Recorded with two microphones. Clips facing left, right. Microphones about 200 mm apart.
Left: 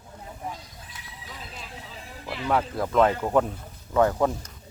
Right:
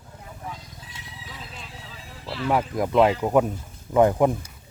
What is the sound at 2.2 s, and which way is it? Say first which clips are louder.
Speech: right 3 dB; 15° left (ahead or behind).